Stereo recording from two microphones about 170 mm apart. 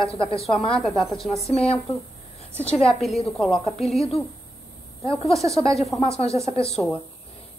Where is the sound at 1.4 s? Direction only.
35° left (ahead or behind).